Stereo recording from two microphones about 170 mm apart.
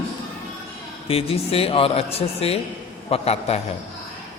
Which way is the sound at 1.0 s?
35° left (ahead or behind).